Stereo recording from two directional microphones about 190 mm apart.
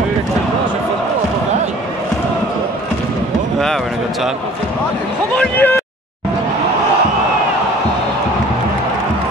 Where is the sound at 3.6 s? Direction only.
Centre (ahead or behind).